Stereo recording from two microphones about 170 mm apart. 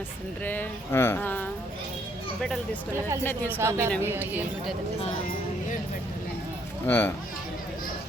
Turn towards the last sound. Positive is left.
turn(degrees=15)  # may be behind; listen again after turning